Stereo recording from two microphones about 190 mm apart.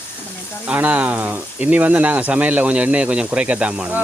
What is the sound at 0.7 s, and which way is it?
Speech, 5° right (ahead or behind).